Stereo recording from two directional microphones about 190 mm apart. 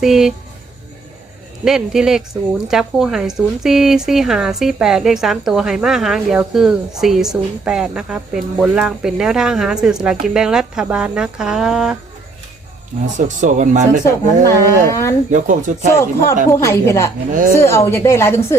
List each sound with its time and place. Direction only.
0.0 s speech: centre (ahead or behind)
1.6 s speech: 5° right (ahead or behind)
13.1 s speech: 40° right (ahead or behind)
14.0 s speech: 15° left (ahead or behind)
15.3 s speech: 40° right (ahead or behind)
16.5 s speech: 15° left (ahead or behind)